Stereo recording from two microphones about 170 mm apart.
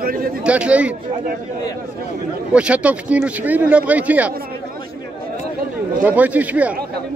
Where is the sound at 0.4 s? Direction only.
5° right (ahead or behind).